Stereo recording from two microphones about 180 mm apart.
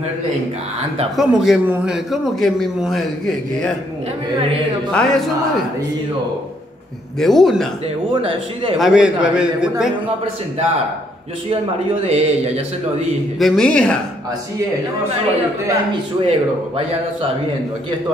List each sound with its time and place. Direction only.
1.1 s a man's voice: centre (ahead or behind)
4.9 s a man's voice: centre (ahead or behind)
7.2 s a man's voice: centre (ahead or behind)
8.1 s a man's voice: 30° right (ahead or behind)
8.7 s a man's voice: centre (ahead or behind)
12.1 s a man's voice: 35° right (ahead or behind)
13.4 s a man's voice: 5° left (ahead or behind)
15.7 s a man's voice: 30° right (ahead or behind)